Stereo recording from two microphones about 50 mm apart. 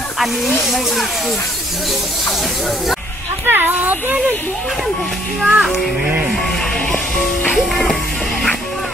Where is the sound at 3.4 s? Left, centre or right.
Right.